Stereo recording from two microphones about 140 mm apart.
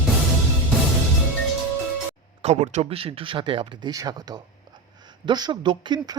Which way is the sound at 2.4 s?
55° right (ahead or behind).